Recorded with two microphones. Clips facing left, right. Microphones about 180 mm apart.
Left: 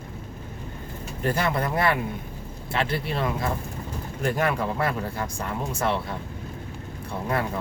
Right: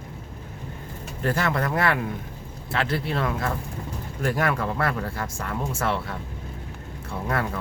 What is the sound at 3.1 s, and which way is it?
Speech, 15° left (ahead or behind).